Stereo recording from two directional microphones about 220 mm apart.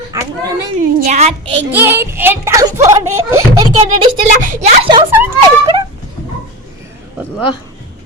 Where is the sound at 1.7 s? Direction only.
10° right (ahead or behind).